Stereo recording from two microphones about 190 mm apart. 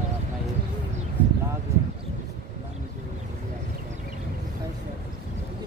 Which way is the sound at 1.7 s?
15° right (ahead or behind).